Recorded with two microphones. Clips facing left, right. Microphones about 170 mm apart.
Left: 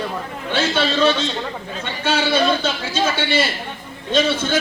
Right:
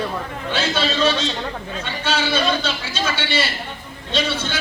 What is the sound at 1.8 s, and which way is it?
Speech, 55° left (ahead or behind).